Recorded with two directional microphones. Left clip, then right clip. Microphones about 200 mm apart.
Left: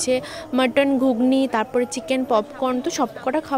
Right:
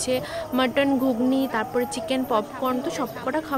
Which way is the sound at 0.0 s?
30° left (ahead or behind).